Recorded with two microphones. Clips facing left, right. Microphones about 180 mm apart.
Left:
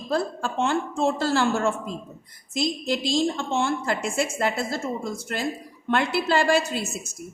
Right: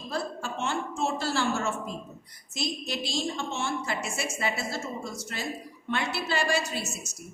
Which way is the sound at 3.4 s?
55° left (ahead or behind).